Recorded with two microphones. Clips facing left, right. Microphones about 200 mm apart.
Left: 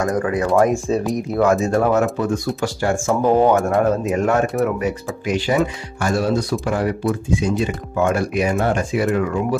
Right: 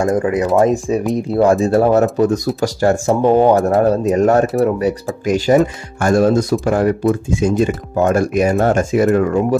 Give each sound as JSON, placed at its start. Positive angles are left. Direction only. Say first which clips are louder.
{"t": 0.0, "sound": "speech", "louder": "right 4 dB", "side_deg": -25}
{"t": 1.1, "sound": "speech", "louder": "right 5 dB", "side_deg": -30}